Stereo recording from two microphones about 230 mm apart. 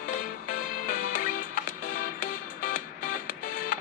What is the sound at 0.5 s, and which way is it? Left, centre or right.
Music, left.